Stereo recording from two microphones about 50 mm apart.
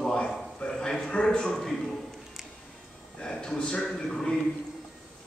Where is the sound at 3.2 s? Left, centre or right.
Centre.